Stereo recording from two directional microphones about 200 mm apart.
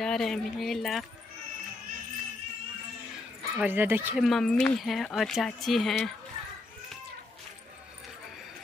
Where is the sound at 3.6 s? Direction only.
10° right (ahead or behind).